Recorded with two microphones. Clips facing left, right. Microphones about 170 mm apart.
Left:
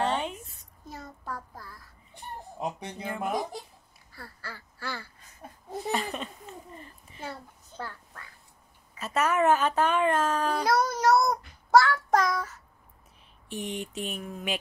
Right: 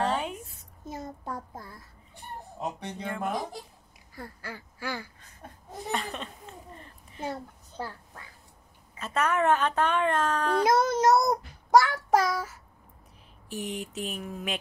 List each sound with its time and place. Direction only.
0.0 s a sound: centre (ahead or behind)
1.2 s child singing: 20° right (ahead or behind)
2.8 s speech: 5° left (ahead or behind)
4.1 s duck: 15° right (ahead or behind)
5.9 s a sound: 5° left (ahead or behind)
7.2 s a sound: 15° right (ahead or behind)
9.0 s speech: 5° left (ahead or behind)
10.7 s child singing: 25° right (ahead or behind); by 12.5 s 10° right (ahead or behind)
13.5 s speech: centre (ahead or behind)